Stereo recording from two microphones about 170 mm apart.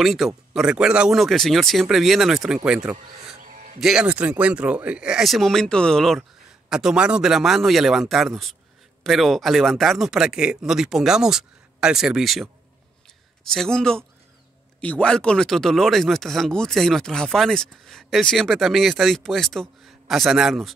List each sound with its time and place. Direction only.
0.0 s speech: centre (ahead or behind)
3.3 s a sound: 50° right (ahead or behind)
3.8 s speech: 5° right (ahead or behind)
13.5 s speech: 5° left (ahead or behind)